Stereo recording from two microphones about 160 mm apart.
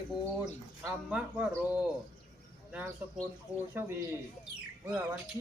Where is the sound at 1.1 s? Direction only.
5° right (ahead or behind).